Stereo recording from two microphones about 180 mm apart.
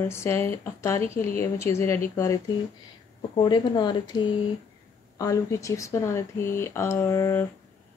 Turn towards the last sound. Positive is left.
turn(degrees=15)  # may be behind; listen again after turning